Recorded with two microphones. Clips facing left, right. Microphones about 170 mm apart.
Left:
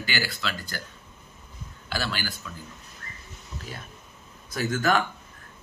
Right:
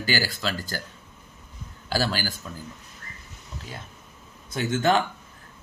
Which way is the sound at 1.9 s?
40° right (ahead or behind).